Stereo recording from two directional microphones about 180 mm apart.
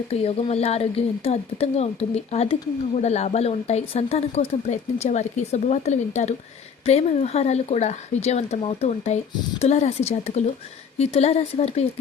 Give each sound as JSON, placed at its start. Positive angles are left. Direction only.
{"t": 0.1, "sound": "a woman's voice", "side_deg": 35}